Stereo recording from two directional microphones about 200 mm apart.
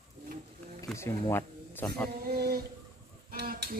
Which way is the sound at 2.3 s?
50° right (ahead or behind).